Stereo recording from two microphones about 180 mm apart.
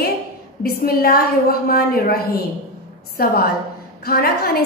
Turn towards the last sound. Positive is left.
turn(degrees=60)  # may be behind; listen again after turning